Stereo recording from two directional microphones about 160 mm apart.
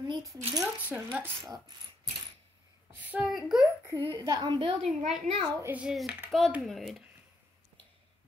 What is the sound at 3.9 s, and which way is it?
Speech, 30° right (ahead or behind).